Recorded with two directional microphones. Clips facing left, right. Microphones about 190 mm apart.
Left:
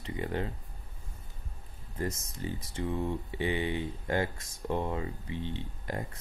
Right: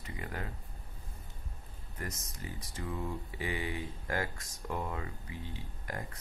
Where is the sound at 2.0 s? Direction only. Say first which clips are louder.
Left 8 dB; 25° left (ahead or behind).